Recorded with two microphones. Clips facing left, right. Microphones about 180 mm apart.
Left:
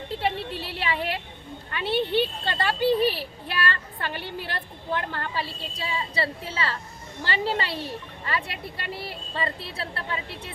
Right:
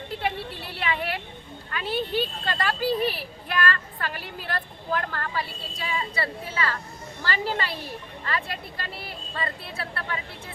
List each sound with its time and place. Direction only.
0.8 s a woman's voice: 25° left (ahead or behind)